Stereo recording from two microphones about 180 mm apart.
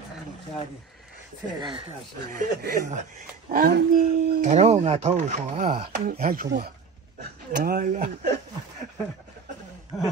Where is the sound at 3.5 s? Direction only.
55° right (ahead or behind).